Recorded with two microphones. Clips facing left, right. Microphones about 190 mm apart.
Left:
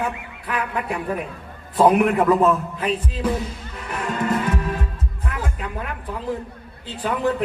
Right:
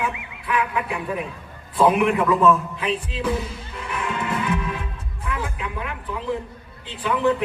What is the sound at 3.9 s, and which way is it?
Music, 45° left (ahead or behind).